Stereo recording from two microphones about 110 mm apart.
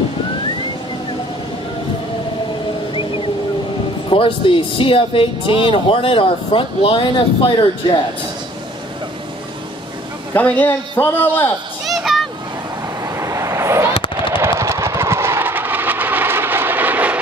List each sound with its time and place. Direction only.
2.9 s a sound: 50° left (ahead or behind)
4.1 s speech: 55° left (ahead or behind)
10.3 s a man's voice: 15° left (ahead or behind)
11.8 s a sound: centre (ahead or behind)
13.0 s fireworks: 30° right (ahead or behind)
14.3 s vehicle: 25° right (ahead or behind)